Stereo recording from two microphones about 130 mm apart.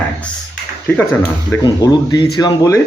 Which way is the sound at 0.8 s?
15° left (ahead or behind).